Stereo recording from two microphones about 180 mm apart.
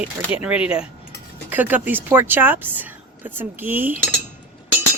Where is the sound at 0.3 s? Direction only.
5° right (ahead or behind).